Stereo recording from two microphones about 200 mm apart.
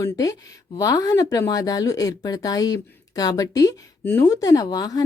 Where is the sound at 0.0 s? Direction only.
15° left (ahead or behind).